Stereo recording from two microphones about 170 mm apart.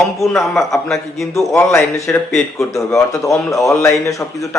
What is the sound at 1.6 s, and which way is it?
Speech, 15° left (ahead or behind).